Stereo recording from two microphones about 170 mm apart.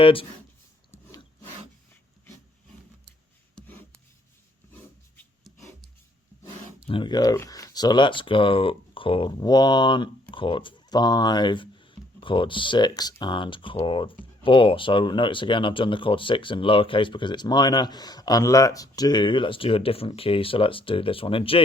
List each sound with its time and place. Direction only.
0.0 s speech: 30° left (ahead or behind)
0.9 s a sound: 15° left (ahead or behind)
3.5 s rub: 10° left (ahead or behind)
6.8 s speech: 30° left (ahead or behind)